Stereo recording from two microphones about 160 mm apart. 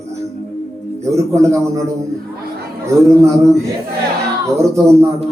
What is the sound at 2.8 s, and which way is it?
Speech, 20° right (ahead or behind).